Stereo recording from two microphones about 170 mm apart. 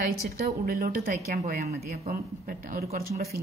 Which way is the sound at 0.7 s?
60° right (ahead or behind).